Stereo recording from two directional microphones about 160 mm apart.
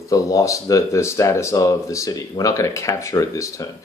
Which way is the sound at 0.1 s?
20° left (ahead or behind).